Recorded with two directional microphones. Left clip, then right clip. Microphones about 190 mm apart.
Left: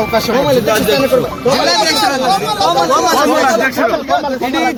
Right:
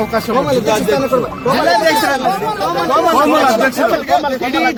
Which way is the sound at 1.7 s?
35° right (ahead or behind).